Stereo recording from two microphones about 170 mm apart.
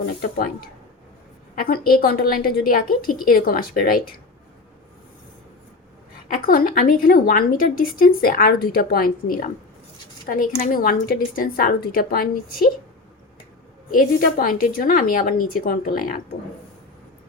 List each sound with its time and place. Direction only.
0.2 s a woman's voice: 60° left (ahead or behind)
6.2 s a woman's voice: 55° left (ahead or behind)
13.9 s a woman's voice: 55° left (ahead or behind)